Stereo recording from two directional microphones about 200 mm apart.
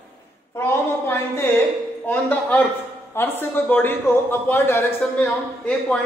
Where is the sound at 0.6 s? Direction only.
10° left (ahead or behind).